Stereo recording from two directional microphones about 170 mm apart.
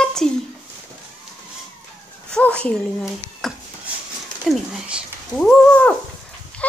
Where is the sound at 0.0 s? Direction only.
5° left (ahead or behind).